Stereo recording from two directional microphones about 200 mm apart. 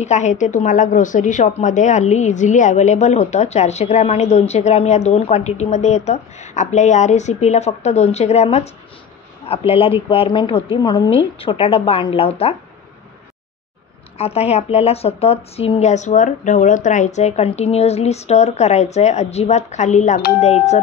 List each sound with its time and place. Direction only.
0.0 s a woman's voice: 35° left (ahead or behind)
14.1 s a woman's voice: 30° left (ahead or behind)